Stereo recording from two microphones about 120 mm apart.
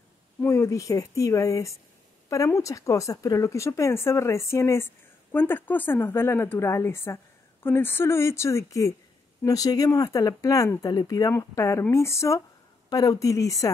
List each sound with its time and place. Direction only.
0.4 s speech: 25° left (ahead or behind)